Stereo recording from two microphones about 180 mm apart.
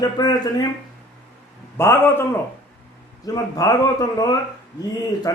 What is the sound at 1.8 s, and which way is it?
Speech, 15° left (ahead or behind).